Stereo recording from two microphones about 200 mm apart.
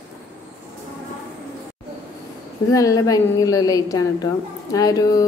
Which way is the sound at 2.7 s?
15° left (ahead or behind).